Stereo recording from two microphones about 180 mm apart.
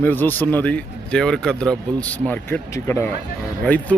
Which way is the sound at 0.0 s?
10° left (ahead or behind).